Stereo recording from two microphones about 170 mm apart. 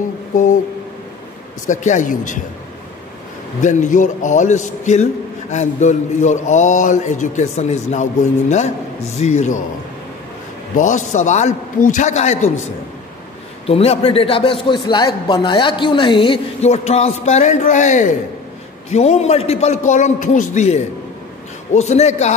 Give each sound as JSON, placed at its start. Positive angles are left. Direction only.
{"t": 1.7, "sound": "mantra", "side_deg": 45}
{"t": 3.6, "sound": "mantra", "side_deg": 50}
{"t": 10.8, "sound": "mantra", "side_deg": 45}
{"t": 13.7, "sound": "a man's voice", "side_deg": 35}